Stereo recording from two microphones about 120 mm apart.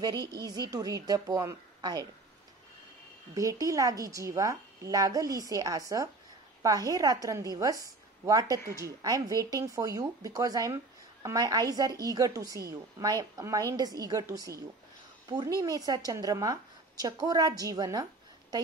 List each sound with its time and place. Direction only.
0.0 s a woman's voice: 35° right (ahead or behind)
3.3 s a woman's voice: 30° right (ahead or behind)